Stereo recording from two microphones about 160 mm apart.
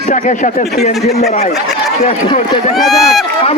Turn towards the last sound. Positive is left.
turn(degrees=0)  # may be behind; listen again after turning